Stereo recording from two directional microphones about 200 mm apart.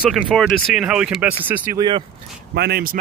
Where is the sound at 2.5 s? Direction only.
55° right (ahead or behind).